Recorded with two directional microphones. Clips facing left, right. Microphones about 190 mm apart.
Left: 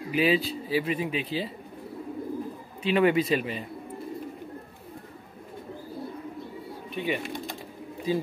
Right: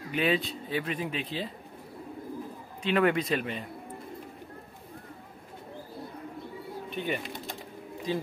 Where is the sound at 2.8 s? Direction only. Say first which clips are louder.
Left 3 dB; 5° left (ahead or behind).